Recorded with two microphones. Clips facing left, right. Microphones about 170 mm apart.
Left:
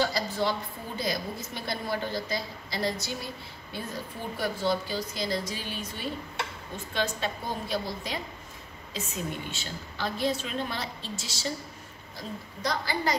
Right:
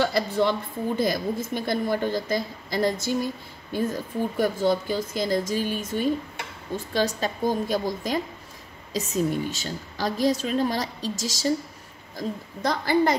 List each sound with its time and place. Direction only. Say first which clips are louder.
0.0 s a woman's voice: right 5 dB; 55° right (ahead or behind)